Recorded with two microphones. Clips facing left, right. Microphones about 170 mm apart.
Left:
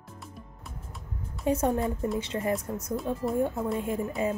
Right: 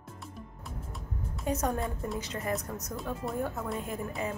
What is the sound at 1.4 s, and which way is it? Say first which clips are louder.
A woman's voice: left 5 dB; 30° left (ahead or behind).